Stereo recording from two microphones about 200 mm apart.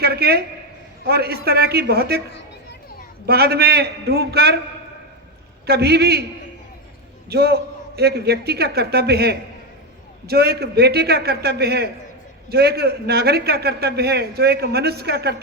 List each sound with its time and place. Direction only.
0.0 s a sound: 50° right (ahead or behind)
1.0 s a man's voice: 50° right (ahead or behind)
3.2 s a man's voice: 50° right (ahead or behind)
5.6 s a man's voice: 55° right (ahead or behind)
7.3 s a man's voice: 55° right (ahead or behind)